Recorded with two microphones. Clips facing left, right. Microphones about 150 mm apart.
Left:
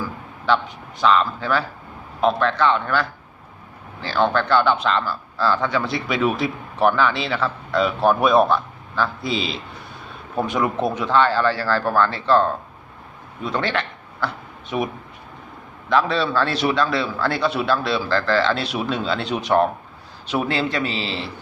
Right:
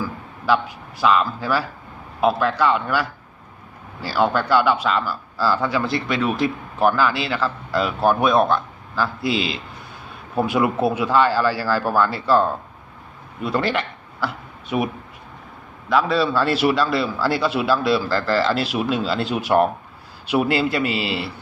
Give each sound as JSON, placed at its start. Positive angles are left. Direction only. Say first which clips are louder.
{"t": 0.0, "sound": "a man's voice", "louder": "right 1 dB", "side_deg": -10}
{"t": 15.9, "sound": "speech", "louder": "right 1 dB", "side_deg": -5}